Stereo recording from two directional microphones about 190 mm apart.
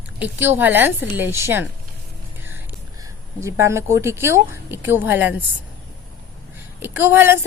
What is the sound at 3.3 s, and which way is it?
A woman's voice, 15° right (ahead or behind).